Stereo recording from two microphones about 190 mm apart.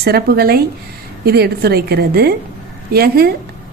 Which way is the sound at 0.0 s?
55° right (ahead or behind).